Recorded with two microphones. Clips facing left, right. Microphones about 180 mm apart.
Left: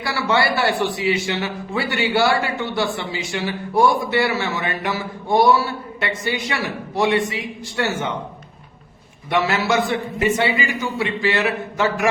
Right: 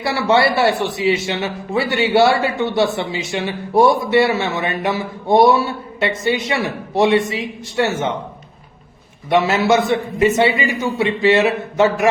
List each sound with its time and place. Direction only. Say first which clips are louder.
0.0 s a man's voice: right 5 dB; 25° right (ahead or behind)
9.3 s a man's voice: right 5 dB; 25° right (ahead or behind)